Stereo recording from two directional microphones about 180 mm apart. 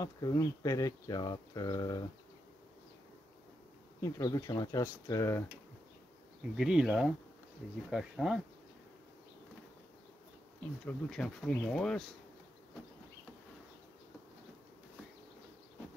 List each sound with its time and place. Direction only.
0.0 s speech: 20° left (ahead or behind)
4.0 s speech: 20° left (ahead or behind)
6.5 s speech: 5° right (ahead or behind)
10.9 s speech: 5° left (ahead or behind)